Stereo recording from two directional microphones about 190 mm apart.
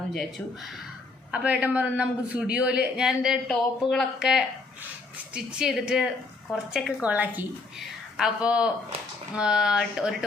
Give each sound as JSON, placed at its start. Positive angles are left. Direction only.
{"t": 0.1, "sound": "a man's voice", "side_deg": 0}